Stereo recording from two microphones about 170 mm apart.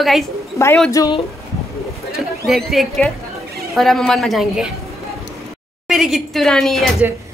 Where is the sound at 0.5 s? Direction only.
15° left (ahead or behind).